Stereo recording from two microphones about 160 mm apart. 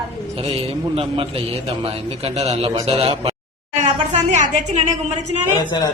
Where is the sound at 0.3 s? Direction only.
35° right (ahead or behind).